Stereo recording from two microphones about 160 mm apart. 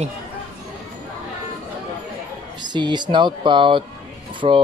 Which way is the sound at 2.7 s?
30° right (ahead or behind).